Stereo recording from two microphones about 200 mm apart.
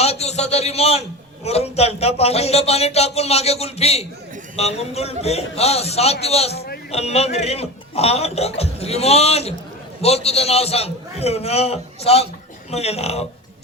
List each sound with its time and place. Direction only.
0.0 s a man's voice: 30° left (ahead or behind)